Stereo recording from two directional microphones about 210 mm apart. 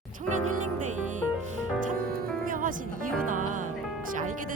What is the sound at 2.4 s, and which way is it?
Music, 40° right (ahead or behind).